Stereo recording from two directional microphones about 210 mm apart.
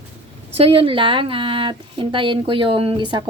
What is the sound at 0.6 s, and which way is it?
Speech, 25° right (ahead or behind).